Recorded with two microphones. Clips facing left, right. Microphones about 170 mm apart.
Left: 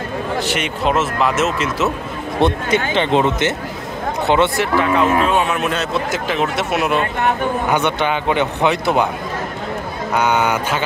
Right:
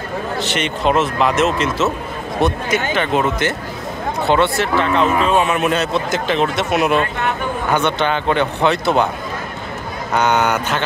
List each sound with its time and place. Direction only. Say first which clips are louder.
0.4 s speech: right 2 dB; 10° left (ahead or behind)
2.4 s speech: left 2 dB; 25° left (ahead or behind); by 7.0 s centre (ahead or behind)
7.7 s a man's voice: right 4 dB; 15° left (ahead or behind)
10.1 s a man's voice: right 1 dB; 5° left (ahead or behind)